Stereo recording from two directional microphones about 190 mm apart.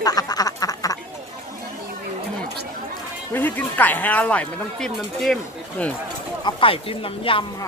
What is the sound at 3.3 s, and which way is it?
Speech, 10° left (ahead or behind).